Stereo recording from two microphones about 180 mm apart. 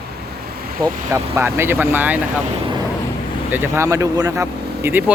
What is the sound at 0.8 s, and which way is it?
Speech, 20° right (ahead or behind).